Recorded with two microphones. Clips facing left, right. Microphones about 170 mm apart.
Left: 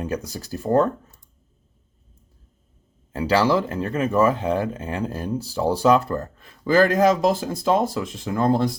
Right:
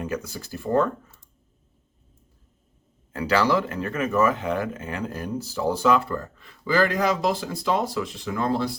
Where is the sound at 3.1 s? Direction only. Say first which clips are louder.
Left 2 dB; 30° left (ahead or behind).